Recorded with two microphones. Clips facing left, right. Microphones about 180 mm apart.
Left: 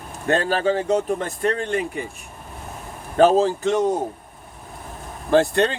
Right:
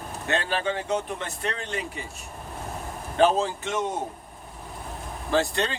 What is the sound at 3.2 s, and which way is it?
Speech, 40° left (ahead or behind).